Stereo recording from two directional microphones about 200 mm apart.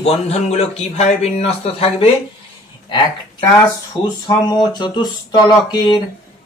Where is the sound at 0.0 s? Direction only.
30° left (ahead or behind).